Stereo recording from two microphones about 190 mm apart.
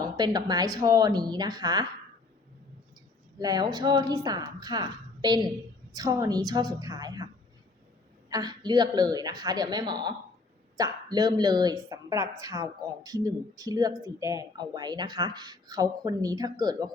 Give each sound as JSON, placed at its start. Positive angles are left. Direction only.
{"t": 0.0, "sound": "a woman's voice", "side_deg": -20}
{"t": 3.3, "sound": "speech", "side_deg": -20}
{"t": 8.3, "sound": "speech", "side_deg": -20}